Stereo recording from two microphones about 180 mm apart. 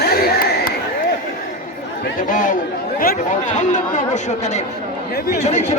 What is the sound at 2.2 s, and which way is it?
Speech, 50° left (ahead or behind).